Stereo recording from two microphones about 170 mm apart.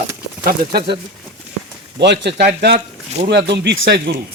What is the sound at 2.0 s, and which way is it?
Speech, 90° right.